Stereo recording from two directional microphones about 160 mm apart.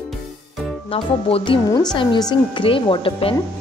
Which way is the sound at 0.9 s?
35° left (ahead or behind).